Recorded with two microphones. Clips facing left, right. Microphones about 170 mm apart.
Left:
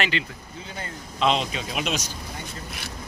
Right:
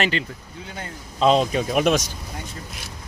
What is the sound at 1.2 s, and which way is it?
Speech, 45° right (ahead or behind).